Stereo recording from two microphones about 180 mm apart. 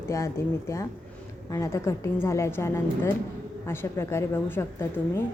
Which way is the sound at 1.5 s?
15° left (ahead or behind).